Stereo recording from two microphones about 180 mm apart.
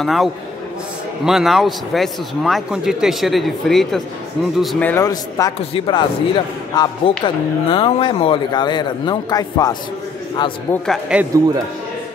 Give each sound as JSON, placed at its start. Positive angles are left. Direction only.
{"t": 0.0, "sound": "a man's voice", "side_deg": 0}
{"t": 5.0, "sound": "a man's voice", "side_deg": 20}
{"t": 11.1, "sound": "speech", "side_deg": -5}